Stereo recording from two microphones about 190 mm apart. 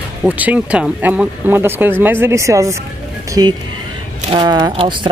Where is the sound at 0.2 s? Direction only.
10° right (ahead or behind).